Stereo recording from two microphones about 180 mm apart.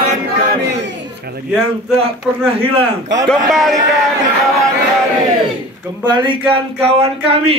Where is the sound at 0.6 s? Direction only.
70° right (ahead or behind).